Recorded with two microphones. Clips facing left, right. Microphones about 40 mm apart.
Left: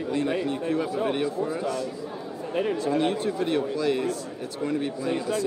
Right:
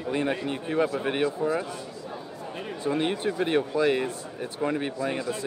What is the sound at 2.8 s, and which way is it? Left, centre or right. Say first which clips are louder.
A man's voice: left 2 dB; right.